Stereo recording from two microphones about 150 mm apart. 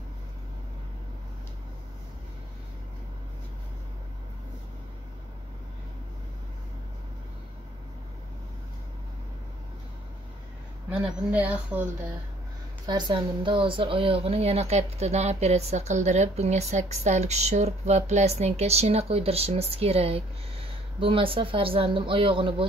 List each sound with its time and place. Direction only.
10.9 s a woman's voice: 5° right (ahead or behind)
12.8 s speech: 30° right (ahead or behind)